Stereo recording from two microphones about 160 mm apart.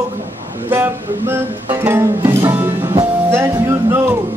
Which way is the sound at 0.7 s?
15° right (ahead or behind).